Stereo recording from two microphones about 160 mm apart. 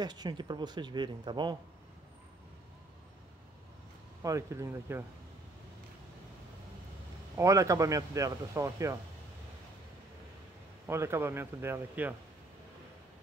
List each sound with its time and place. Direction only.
0.0 s speech: 25° right (ahead or behind)
4.2 s speech: 20° right (ahead or behind)
7.3 s speech: 20° right (ahead or behind)
10.9 s speech: 15° right (ahead or behind)